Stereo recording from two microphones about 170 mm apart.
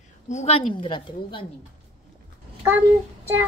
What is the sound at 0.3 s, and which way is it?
A woman's voice, 40° left (ahead or behind).